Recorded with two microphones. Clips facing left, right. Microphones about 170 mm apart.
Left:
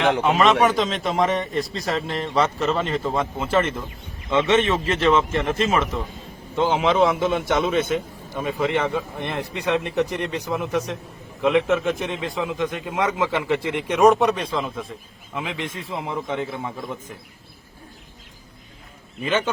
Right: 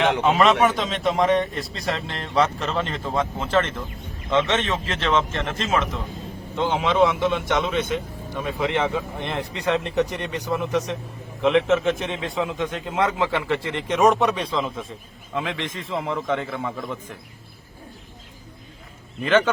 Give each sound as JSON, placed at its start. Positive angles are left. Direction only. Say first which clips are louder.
{"t": 0.0, "sound": "a man's voice", "louder": "even", "side_deg": 0}
{"t": 13.9, "sound": "a man's voice", "louder": "left 2 dB", "side_deg": 0}